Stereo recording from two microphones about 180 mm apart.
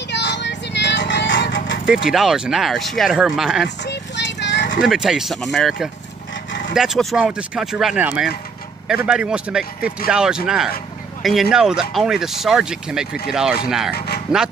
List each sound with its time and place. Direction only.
0.1 s music: 75° left (ahead or behind)
1.9 s speech: centre (ahead or behind)
3.6 s horse: 75° left (ahead or behind)
4.8 s speech: centre (ahead or behind)
13.9 s a sound: 60° left (ahead or behind)